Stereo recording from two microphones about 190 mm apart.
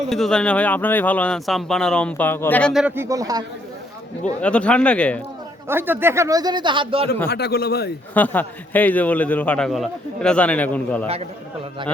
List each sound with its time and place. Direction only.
0.1 s a man's voice: 5° left (ahead or behind)
2.8 s speech: 10° right (ahead or behind)
4.4 s speech: 5° left (ahead or behind)
5.6 s speech: 10° right (ahead or behind); by 7.1 s 30° right (ahead or behind)
7.3 s speech: 55° left (ahead or behind)
8.1 s a man's voice: 10° left (ahead or behind)
11.0 s a man's voice: 30° right (ahead or behind)